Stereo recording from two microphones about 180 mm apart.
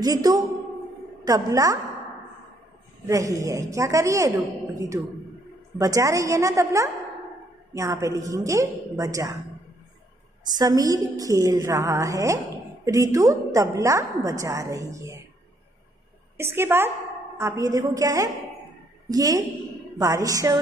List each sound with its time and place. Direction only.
0.0 s a woman's voice: 20° right (ahead or behind)
3.1 s a woman's voice: 20° right (ahead or behind)
10.4 s a woman's voice: 20° right (ahead or behind)
16.3 s a woman's voice: 15° right (ahead or behind)